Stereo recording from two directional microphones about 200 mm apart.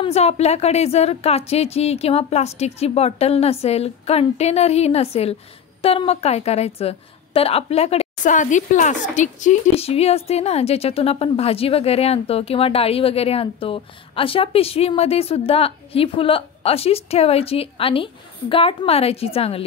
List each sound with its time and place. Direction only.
0.0 s a woman's voice: 30° left (ahead or behind)